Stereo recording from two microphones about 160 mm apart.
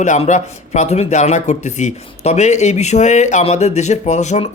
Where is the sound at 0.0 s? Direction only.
50° left (ahead or behind).